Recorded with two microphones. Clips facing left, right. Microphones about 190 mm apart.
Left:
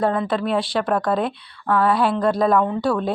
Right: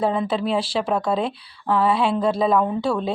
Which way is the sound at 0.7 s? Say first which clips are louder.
Left 1 dB; centre (ahead or behind).